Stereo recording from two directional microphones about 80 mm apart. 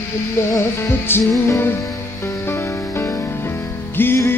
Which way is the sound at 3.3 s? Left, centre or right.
Left.